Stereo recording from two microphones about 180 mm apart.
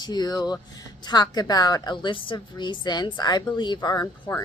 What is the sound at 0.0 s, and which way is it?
Speech, 20° left (ahead or behind).